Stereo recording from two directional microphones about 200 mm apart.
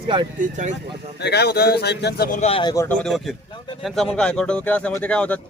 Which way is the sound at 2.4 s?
30° left (ahead or behind).